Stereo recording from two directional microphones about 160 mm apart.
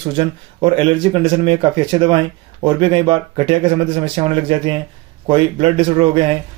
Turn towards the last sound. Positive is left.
turn(degrees=-35)  # may be behind; listen again after turning